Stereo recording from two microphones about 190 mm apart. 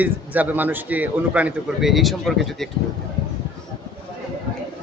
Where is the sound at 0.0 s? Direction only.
10° right (ahead or behind).